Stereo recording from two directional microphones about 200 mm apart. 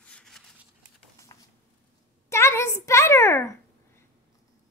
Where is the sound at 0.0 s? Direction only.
5° left (ahead or behind).